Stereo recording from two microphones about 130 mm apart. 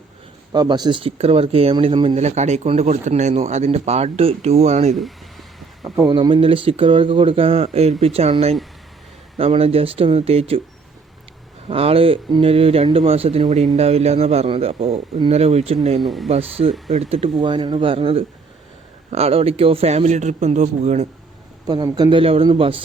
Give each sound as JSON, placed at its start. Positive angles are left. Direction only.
{"t": 0.5, "sound": "speech", "side_deg": -35}
{"t": 2.1, "sound": "speech", "side_deg": -60}
{"t": 4.9, "sound": "a sound", "side_deg": 0}
{"t": 6.1, "sound": "speech", "side_deg": -35}
{"t": 11.7, "sound": "speech", "side_deg": -45}
{"t": 16.0, "sound": "speech", "side_deg": 0}
{"t": 16.3, "sound": "speech", "side_deg": -50}
{"t": 21.7, "sound": "speech", "side_deg": -30}
{"t": 22.2, "sound": "speech", "side_deg": -45}